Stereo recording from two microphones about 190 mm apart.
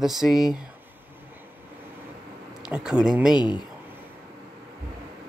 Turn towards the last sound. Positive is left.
turn(degrees=25)  # may be behind; listen again after turning